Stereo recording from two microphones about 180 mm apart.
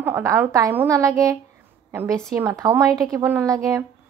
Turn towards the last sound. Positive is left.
turn(degrees=-15)  # may be behind; listen again after turning